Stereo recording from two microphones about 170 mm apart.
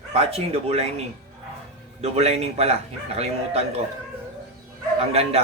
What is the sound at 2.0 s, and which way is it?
Speech, 40° right (ahead or behind).